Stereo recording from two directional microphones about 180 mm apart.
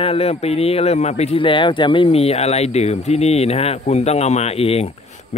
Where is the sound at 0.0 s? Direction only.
35° left (ahead or behind).